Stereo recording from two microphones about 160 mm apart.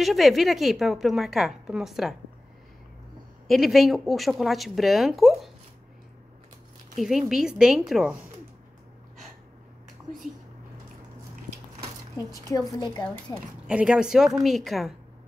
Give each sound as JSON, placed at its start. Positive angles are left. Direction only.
{"t": 0.0, "sound": "a woman's voice", "side_deg": 0}
{"t": 3.4, "sound": "a woman's voice", "side_deg": 0}
{"t": 7.0, "sound": "a woman's voice", "side_deg": 0}
{"t": 12.2, "sound": "speech", "side_deg": 20}
{"t": 13.7, "sound": "a woman's voice", "side_deg": -5}